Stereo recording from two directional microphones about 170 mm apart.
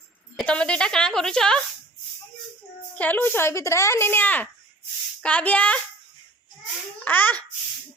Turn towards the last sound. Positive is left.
turn(degrees=10)  # may be behind; listen again after turning